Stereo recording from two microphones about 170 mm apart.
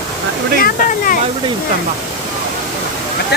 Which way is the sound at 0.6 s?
55° left (ahead or behind).